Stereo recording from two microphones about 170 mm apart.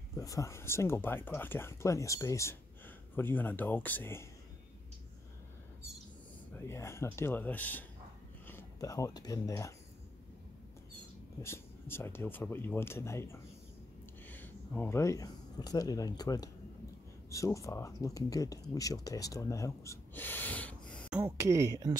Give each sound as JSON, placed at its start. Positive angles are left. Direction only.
{"t": 0.1, "sound": "speech", "side_deg": 20}
{"t": 6.5, "sound": "speech", "side_deg": 15}
{"t": 11.4, "sound": "speech", "side_deg": 15}
{"t": 21.1, "sound": "speech", "side_deg": -15}